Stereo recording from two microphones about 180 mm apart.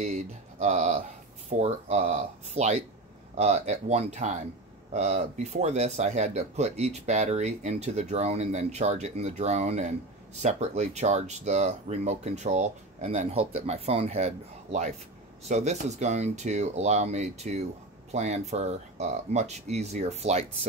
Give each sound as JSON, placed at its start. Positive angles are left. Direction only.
{"t": 0.0, "sound": "speech", "side_deg": -40}